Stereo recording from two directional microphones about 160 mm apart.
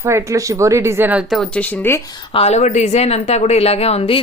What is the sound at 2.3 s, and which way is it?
Speech, 45° left (ahead or behind).